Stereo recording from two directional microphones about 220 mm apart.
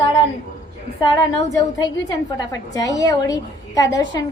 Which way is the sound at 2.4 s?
15° left (ahead or behind).